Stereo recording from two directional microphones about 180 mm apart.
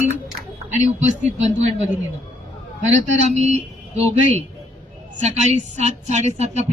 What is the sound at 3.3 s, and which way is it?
Speech, 40° right (ahead or behind).